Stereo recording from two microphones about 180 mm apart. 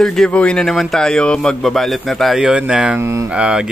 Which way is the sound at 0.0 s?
5° left (ahead or behind).